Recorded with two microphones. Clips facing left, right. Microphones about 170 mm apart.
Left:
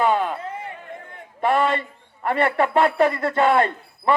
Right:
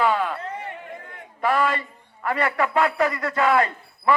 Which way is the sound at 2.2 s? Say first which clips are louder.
Left 3 dB; 25° left (ahead or behind).